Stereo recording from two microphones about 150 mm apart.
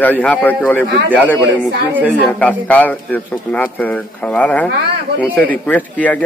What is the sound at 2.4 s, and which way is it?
Speech, 10° left (ahead or behind).